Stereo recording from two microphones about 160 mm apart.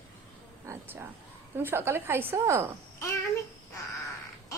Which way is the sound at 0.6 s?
15° right (ahead or behind).